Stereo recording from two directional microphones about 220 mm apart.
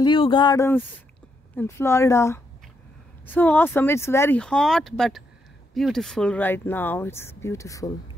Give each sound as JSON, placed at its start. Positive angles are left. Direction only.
{"t": 0.0, "sound": "speech", "side_deg": 20}